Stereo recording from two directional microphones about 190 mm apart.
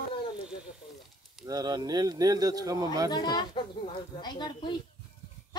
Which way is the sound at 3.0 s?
20° left (ahead or behind).